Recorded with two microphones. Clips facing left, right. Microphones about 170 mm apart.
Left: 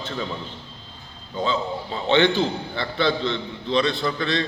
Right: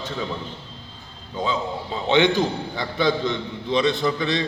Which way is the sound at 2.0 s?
15° right (ahead or behind).